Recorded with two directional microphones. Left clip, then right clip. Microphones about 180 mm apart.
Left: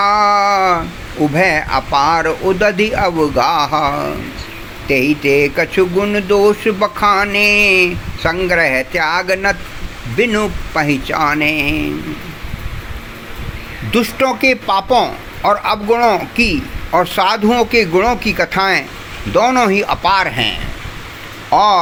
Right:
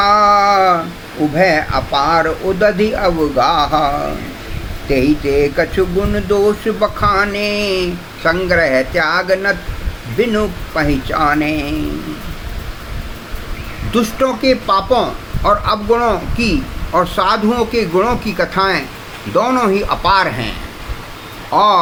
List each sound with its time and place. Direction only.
0.0 s a sound: 35° left (ahead or behind)
1.4 s speech: 35° left (ahead or behind)
13.9 s a man's voice: 25° left (ahead or behind)
21.5 s speech: 30° left (ahead or behind)